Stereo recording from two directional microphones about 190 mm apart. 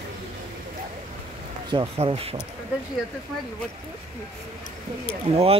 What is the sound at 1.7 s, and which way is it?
Speech, 25° right (ahead or behind).